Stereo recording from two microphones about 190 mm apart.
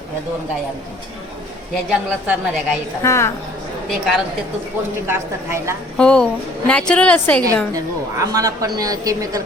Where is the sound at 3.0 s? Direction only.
15° left (ahead or behind).